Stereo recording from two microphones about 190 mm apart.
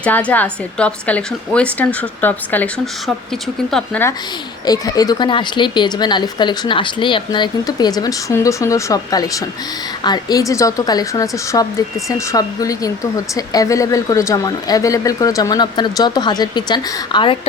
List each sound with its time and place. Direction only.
0.0 s a woman's voice: 5° left (ahead or behind)
4.6 s a woman's voice: 20° left (ahead or behind)